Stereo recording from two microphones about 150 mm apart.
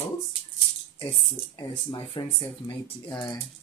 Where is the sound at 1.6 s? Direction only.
30° left (ahead or behind).